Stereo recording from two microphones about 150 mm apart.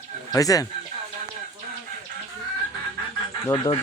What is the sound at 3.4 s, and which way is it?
Speech, 25° left (ahead or behind).